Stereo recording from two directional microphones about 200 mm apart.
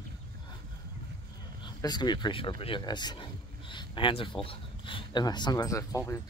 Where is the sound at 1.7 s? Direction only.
20° left (ahead or behind).